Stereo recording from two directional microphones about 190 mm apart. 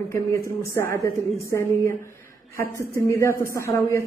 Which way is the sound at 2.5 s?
15° left (ahead or behind).